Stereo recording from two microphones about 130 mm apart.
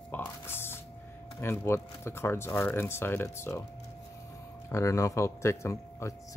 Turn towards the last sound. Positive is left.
turn(degrees=20)  # may be behind; listen again after turning